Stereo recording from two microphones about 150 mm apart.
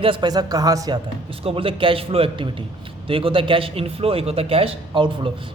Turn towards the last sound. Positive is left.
turn(degrees=-35)  # may be behind; listen again after turning